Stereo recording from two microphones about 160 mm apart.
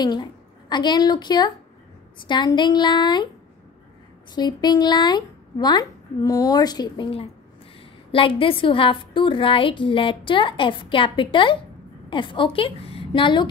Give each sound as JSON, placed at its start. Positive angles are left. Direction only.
{"t": 0.0, "sound": "a woman's voice", "side_deg": 25}
{"t": 4.4, "sound": "a woman's voice", "side_deg": 25}